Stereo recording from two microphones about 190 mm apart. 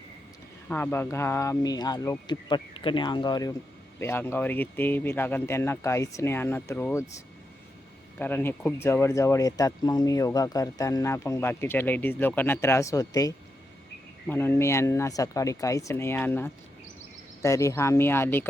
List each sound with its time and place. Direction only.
0.7 s speech: 10° left (ahead or behind)
8.2 s speech: 10° left (ahead or behind)